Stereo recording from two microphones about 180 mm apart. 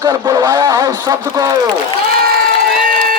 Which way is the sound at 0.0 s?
20° right (ahead or behind).